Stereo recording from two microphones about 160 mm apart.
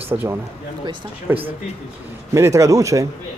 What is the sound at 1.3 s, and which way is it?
Speech, 10° right (ahead or behind).